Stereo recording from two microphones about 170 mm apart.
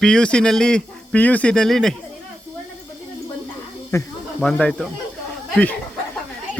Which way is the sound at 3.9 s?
20° left (ahead or behind).